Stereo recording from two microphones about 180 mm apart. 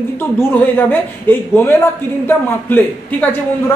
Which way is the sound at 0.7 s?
10° left (ahead or behind).